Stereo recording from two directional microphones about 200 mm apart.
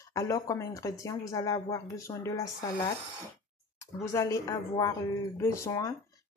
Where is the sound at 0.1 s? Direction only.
15° left (ahead or behind).